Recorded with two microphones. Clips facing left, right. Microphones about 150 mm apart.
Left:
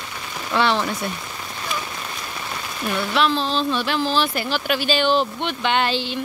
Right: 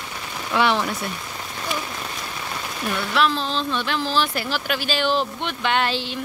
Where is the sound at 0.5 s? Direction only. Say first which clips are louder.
Even; 10° right (ahead or behind).